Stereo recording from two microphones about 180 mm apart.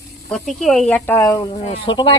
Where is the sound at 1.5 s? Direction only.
30° left (ahead or behind).